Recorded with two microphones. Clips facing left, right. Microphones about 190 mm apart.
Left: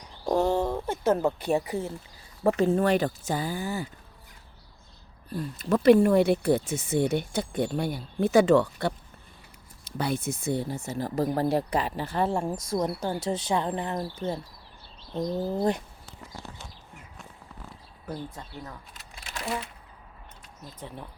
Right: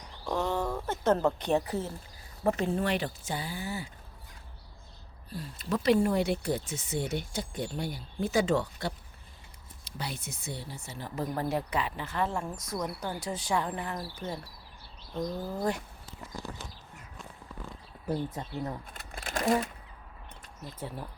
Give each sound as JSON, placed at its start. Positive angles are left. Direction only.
{"t": 0.3, "sound": "a sound", "side_deg": 35}
{"t": 0.9, "sound": "speech", "side_deg": 10}
{"t": 2.7, "sound": "speech", "side_deg": 45}
{"t": 5.3, "sound": "speech", "side_deg": 55}
{"t": 9.8, "sound": "speech", "side_deg": 50}
{"t": 18.9, "sound": "a sound", "side_deg": -50}
{"t": 20.7, "sound": "speech", "side_deg": -5}